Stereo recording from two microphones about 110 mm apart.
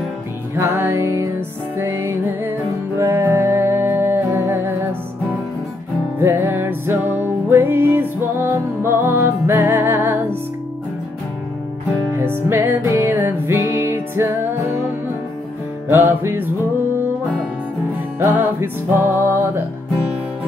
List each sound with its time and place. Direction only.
0.6 s music: 20° right (ahead or behind)
6.1 s music: 20° right (ahead or behind)
12.1 s music: 20° right (ahead or behind)
15.9 s music: 20° right (ahead or behind)
18.2 s music: 20° right (ahead or behind)